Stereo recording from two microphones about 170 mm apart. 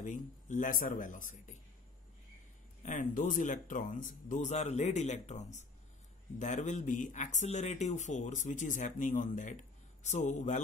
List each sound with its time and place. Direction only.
0.0 s speech: 45° left (ahead or behind)
2.8 s speech: 45° left (ahead or behind)